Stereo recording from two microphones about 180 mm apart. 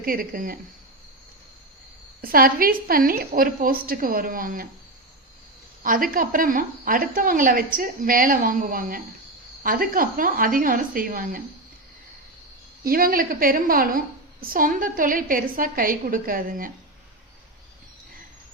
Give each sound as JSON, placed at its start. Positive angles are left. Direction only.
{"t": 0.0, "sound": "a woman's voice", "side_deg": -55}
{"t": 2.2, "sound": "a woman's voice", "side_deg": -55}
{"t": 5.8, "sound": "a woman's voice", "side_deg": -50}
{"t": 12.8, "sound": "a woman's voice", "side_deg": -55}